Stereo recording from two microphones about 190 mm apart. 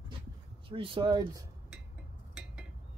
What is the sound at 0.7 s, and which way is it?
Speech, 25° right (ahead or behind).